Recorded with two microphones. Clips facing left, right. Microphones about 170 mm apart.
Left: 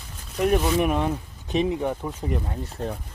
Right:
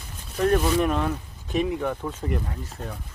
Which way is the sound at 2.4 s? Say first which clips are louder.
Left 5 dB; 30° left (ahead or behind).